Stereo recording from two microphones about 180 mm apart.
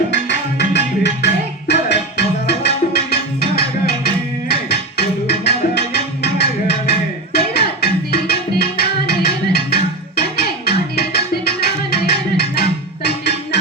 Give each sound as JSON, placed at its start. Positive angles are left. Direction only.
{"t": 0.1, "sound": "music", "side_deg": 75}